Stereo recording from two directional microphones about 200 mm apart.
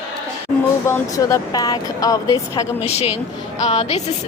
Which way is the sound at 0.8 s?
15° left (ahead or behind).